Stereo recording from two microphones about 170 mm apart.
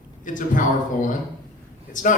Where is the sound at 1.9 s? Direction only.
50° left (ahead or behind).